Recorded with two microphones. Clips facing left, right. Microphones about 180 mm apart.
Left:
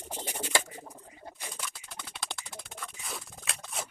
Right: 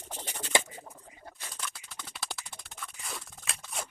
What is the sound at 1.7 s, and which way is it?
Music, centre (ahead or behind).